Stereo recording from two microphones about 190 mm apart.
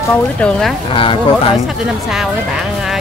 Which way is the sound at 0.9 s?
30° left (ahead or behind).